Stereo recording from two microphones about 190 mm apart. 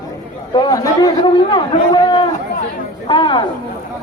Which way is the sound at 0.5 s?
20° left (ahead or behind).